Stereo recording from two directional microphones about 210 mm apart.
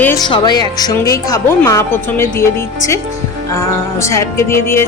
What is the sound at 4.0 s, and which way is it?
Speech, 15° left (ahead or behind).